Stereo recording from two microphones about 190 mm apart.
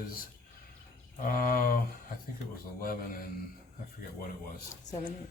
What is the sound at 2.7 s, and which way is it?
Speech, 50° left (ahead or behind).